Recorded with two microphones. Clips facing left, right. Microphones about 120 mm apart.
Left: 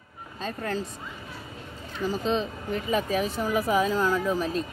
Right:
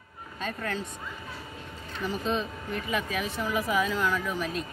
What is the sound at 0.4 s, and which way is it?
Speech, 30° left (ahead or behind).